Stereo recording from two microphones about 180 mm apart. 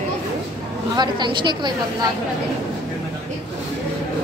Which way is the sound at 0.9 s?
25° right (ahead or behind).